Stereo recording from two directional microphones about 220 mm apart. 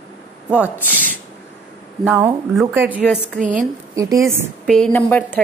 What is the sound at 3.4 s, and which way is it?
Speech, 35° right (ahead or behind).